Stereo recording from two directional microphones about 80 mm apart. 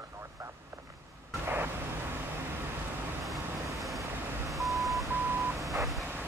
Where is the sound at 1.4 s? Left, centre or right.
Right.